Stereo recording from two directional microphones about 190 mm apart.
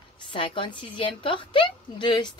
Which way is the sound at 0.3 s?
25° left (ahead or behind).